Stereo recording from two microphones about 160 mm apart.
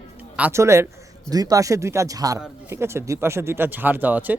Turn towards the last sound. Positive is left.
turn(degrees=-10)  # may be behind; listen again after turning